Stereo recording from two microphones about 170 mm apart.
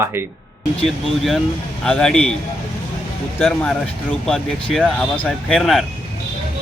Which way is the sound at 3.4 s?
5° left (ahead or behind).